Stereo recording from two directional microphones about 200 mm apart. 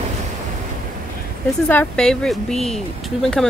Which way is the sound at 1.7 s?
5° left (ahead or behind).